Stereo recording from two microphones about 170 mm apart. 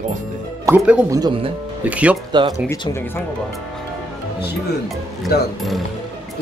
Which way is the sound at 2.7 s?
15° left (ahead or behind).